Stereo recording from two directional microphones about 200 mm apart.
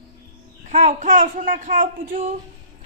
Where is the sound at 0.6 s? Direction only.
40° right (ahead or behind).